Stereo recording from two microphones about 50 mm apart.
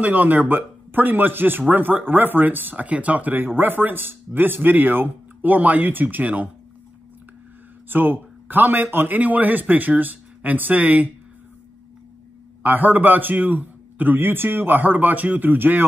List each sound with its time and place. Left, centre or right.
0.0 s speech: right
7.9 s speech: right
12.6 s speech: right